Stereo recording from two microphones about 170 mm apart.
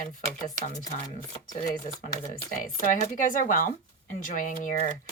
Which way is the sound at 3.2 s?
50° left (ahead or behind).